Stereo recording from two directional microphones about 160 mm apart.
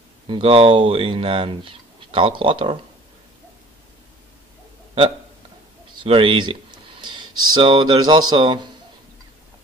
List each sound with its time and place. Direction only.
0.3 s speech: 35° right (ahead or behind)
6.0 s speech: 30° right (ahead or behind)